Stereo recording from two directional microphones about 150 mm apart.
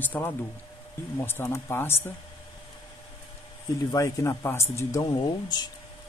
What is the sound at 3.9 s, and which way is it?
A man's voice, 20° left (ahead or behind).